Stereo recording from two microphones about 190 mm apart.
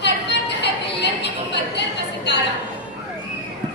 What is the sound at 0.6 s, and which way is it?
Music, 65° left (ahead or behind).